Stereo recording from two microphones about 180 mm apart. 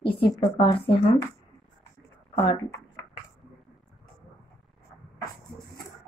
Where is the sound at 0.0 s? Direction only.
30° left (ahead or behind).